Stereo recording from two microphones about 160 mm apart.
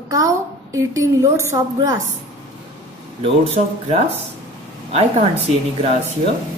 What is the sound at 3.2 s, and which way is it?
A woman's voice, 40° right (ahead or behind).